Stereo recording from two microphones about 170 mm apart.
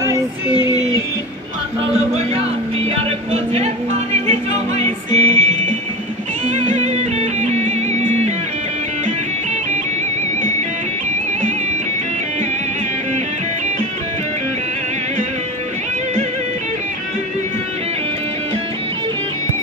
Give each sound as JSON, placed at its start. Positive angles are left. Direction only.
{"t": 0.5, "sound": "a sound", "side_deg": 25}
{"t": 1.9, "sound": "music", "side_deg": -40}
{"t": 3.5, "sound": "music", "side_deg": -40}
{"t": 6.5, "sound": "music", "side_deg": -45}